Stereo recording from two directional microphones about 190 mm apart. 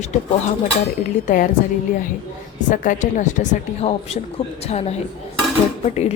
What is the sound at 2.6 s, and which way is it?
A woman's voice, 40° left (ahead or behind).